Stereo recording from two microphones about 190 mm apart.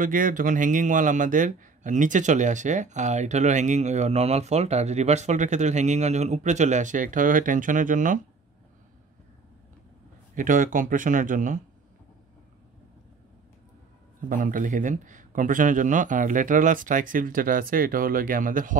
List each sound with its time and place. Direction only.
0.0 s a man's voice: 45° right (ahead or behind)
10.3 s a man's voice: 45° right (ahead or behind)
14.3 s a man's voice: 45° right (ahead or behind)